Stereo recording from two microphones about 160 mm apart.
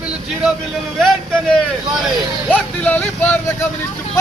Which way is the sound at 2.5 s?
10° left (ahead or behind).